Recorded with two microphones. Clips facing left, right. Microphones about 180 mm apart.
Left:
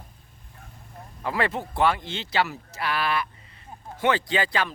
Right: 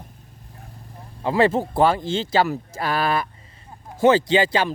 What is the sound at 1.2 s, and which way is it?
Speech, 30° right (ahead or behind).